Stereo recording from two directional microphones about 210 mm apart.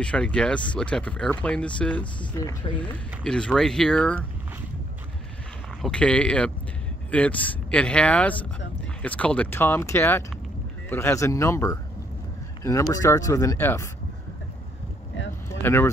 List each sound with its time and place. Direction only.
0.0 s speech: 5° left (ahead or behind)
2.1 s speech: 20° left (ahead or behind)
3.3 s speech: 5° left (ahead or behind)
5.8 s speech: 5° left (ahead or behind)
15.6 s speech: 10° left (ahead or behind)